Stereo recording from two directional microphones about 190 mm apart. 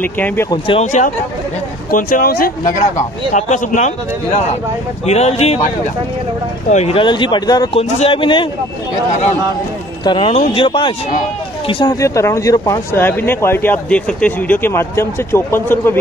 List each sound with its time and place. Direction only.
0.0 s speech: 10° left (ahead or behind)
0.5 s speech: 30° left (ahead or behind)
1.9 s speech: 45° left (ahead or behind)
6.7 s speech: 35° left (ahead or behind)
10.0 s speech: 30° left (ahead or behind); by 16.0 s 10° left (ahead or behind)